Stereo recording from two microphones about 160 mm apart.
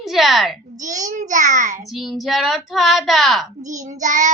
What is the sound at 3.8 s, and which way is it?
Speech, 50° right (ahead or behind).